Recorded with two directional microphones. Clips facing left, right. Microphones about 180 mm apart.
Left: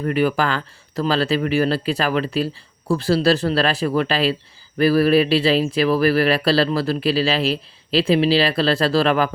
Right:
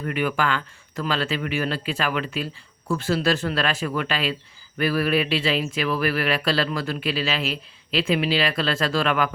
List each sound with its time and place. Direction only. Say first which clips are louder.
0.0 s speech: left 5 dB; 35° left (ahead or behind)